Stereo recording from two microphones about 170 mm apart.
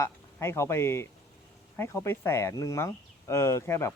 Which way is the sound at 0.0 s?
15° left (ahead or behind).